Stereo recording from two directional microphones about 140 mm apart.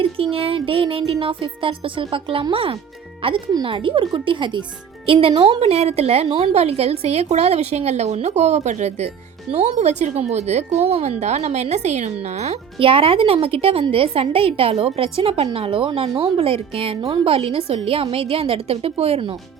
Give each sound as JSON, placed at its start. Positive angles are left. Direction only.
{"t": 0.0, "sound": "music", "side_deg": -40}
{"t": 5.0, "sound": "speech", "side_deg": -40}
{"t": 15.5, "sound": "music", "side_deg": -40}
{"t": 17.7, "sound": "speech", "side_deg": -45}